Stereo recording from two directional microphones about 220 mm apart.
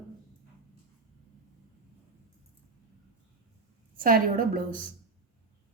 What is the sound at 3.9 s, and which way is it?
Speech, 40° right (ahead or behind).